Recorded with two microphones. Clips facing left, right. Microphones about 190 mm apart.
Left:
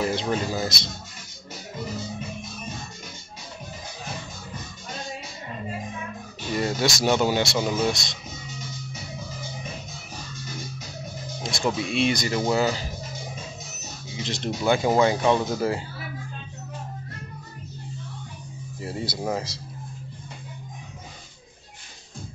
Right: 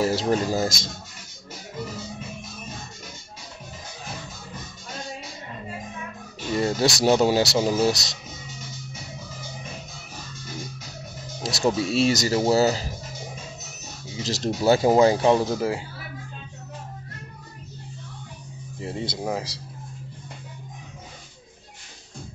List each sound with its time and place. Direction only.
0.0 s speech: 40° right (ahead or behind)
6.5 s speech: 25° right (ahead or behind)
11.4 s speech: 40° right (ahead or behind)
14.1 s speech: 40° right (ahead or behind)
18.8 s speech: 20° right (ahead or behind)
19.2 s speech: 10° right (ahead or behind)